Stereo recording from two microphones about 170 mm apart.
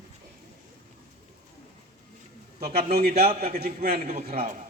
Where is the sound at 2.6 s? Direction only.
65° right (ahead or behind).